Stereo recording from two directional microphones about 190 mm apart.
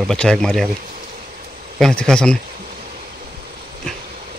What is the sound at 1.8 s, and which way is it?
Speech, 5° left (ahead or behind).